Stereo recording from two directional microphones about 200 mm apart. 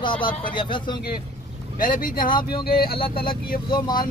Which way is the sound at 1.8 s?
45° left (ahead or behind).